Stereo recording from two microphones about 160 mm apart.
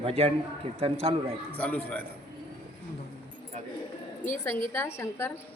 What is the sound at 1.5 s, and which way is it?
Speech, 10° left (ahead or behind).